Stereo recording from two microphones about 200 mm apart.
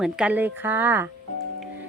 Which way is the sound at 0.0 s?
5° right (ahead or behind).